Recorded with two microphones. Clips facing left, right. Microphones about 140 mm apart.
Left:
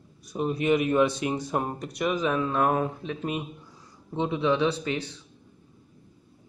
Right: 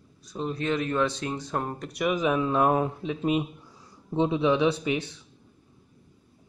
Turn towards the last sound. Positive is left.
turn(degrees=-15)  # may be behind; listen again after turning